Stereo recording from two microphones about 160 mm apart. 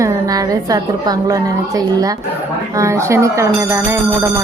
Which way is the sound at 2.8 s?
20° right (ahead or behind).